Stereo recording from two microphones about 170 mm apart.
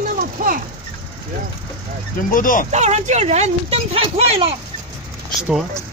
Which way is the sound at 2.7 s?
45° right (ahead or behind).